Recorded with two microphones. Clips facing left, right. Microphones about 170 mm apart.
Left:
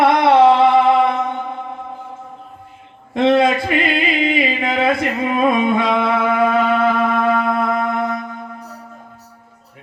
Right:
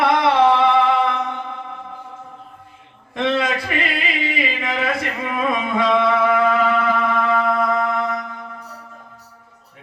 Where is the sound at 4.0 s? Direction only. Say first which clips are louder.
Left 6 dB; 25° left (ahead or behind).